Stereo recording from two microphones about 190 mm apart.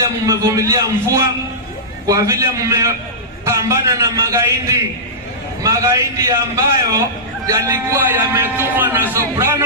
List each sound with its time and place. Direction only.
0.3 s a man's voice: 15° right (ahead or behind)